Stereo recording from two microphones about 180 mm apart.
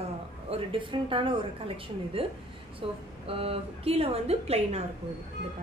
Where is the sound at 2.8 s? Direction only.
30° right (ahead or behind).